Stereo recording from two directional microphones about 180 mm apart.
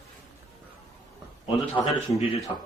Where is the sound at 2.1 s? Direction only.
30° left (ahead or behind).